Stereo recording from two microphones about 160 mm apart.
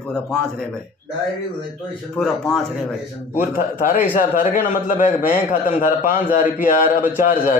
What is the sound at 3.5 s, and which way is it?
A man's voice, 55° left (ahead or behind).